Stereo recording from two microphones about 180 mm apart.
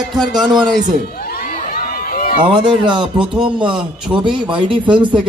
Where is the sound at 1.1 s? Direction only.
60° left (ahead or behind).